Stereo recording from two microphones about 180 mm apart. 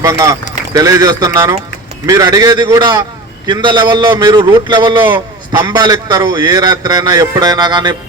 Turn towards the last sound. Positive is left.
turn(degrees=-25)  # may be behind; listen again after turning